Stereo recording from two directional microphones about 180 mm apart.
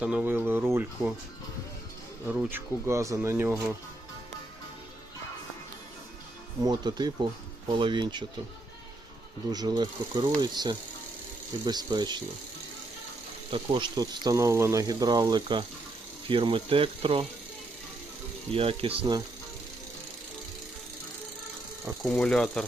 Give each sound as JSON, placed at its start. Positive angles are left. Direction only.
{"t": 0.0, "sound": "speech", "side_deg": -5}
{"t": 2.2, "sound": "speech", "side_deg": -10}
{"t": 6.6, "sound": "speech", "side_deg": -25}
{"t": 9.5, "sound": "speech", "side_deg": -20}
{"t": 13.5, "sound": "speech", "side_deg": -30}
{"t": 18.5, "sound": "speech", "side_deg": -30}
{"t": 22.0, "sound": "speech", "side_deg": 5}